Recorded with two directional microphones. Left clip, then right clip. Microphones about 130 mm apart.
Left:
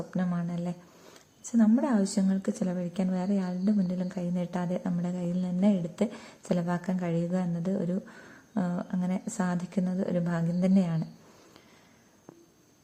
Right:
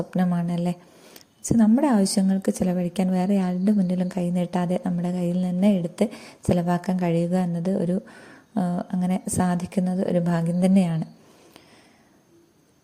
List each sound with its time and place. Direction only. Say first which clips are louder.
0.1 s a woman's voice: right 7 dB; 45° right (ahead or behind)